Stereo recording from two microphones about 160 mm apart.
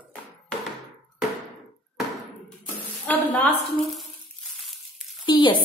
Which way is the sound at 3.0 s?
10° left (ahead or behind).